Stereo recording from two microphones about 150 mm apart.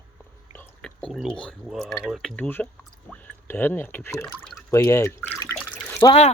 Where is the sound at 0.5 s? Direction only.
10° left (ahead or behind).